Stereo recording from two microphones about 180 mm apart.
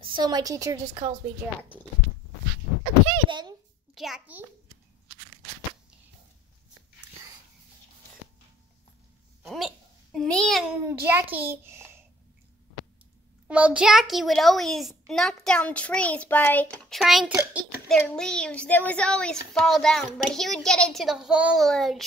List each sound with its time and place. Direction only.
0.0 s a woman's voice: 25° right (ahead or behind)
3.1 s a woman's voice: 25° right (ahead or behind)
3.9 s a child's voice: centre (ahead or behind)
9.4 s a child's voice: centre (ahead or behind)
10.9 s a child's voice: 10° right (ahead or behind)
13.5 s a child's voice: 5° right (ahead or behind)